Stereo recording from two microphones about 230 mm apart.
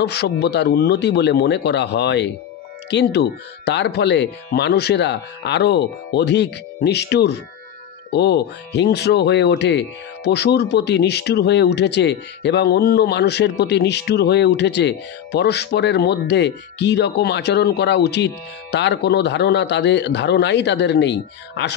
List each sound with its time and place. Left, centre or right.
0.0 s speech: left